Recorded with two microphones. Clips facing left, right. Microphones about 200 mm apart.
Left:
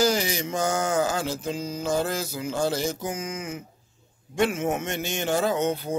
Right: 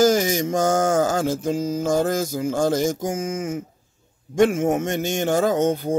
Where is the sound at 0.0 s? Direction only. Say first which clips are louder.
Right 6 dB; 45° right (ahead or behind).